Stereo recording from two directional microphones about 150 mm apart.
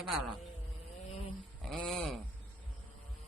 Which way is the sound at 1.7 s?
Centre (ahead or behind).